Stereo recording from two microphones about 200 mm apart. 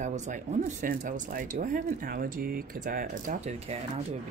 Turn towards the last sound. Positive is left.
turn(degrees=-35)  # may be behind; listen again after turning